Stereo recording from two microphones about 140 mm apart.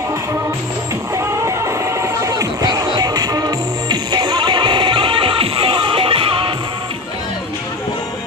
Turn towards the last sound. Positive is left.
turn(degrees=-40)  # may be behind; listen again after turning